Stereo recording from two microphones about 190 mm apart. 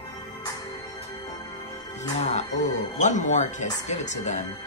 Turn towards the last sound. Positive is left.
turn(degrees=40)  # may be behind; listen again after turning